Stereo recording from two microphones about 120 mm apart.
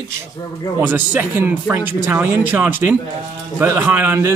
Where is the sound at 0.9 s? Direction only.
15° right (ahead or behind).